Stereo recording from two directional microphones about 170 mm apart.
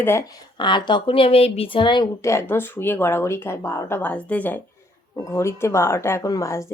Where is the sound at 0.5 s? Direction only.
25° left (ahead or behind).